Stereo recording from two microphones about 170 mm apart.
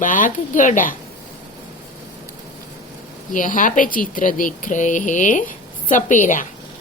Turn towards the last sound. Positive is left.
turn(degrees=50)  # may be behind; listen again after turning